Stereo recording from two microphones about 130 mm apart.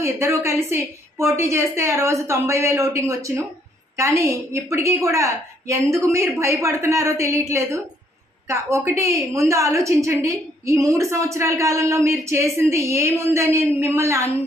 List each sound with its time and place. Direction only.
0.0 s a woman's voice: 20° right (ahead or behind)